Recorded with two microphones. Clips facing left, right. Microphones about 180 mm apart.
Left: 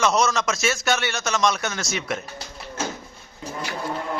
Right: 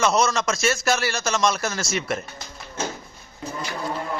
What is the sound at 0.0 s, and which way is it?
A man's voice, centre (ahead or behind).